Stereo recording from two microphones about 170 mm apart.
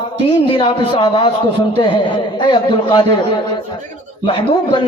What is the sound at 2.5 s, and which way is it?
Speech, 25° left (ahead or behind).